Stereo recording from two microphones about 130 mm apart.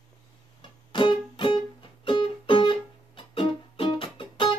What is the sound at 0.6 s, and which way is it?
Music, 40° left (ahead or behind).